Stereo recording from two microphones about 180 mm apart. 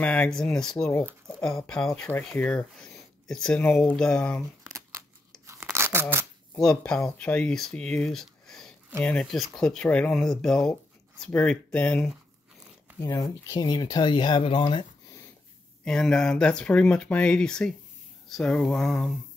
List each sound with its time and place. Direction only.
0.0 s speech: 10° left (ahead or behind)
4.6 s a sound: 20° right (ahead or behind)
5.5 s tearing: 15° right (ahead or behind)
6.5 s speech: 5° left (ahead or behind)
13.0 s speech: 15° left (ahead or behind)
15.8 s speech: 5° left (ahead or behind)